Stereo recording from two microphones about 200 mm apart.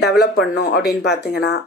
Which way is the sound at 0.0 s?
55° left (ahead or behind).